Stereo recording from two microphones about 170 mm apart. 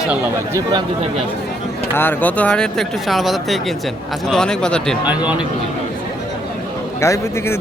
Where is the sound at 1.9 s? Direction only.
10° left (ahead or behind).